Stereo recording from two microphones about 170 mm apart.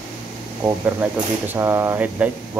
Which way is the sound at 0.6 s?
15° right (ahead or behind).